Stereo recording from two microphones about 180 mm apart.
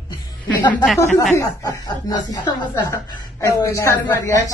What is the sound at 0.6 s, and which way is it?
A man's voice, 25° left (ahead or behind).